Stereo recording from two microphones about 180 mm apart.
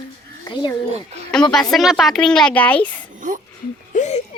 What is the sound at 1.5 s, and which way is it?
Speech, centre (ahead or behind).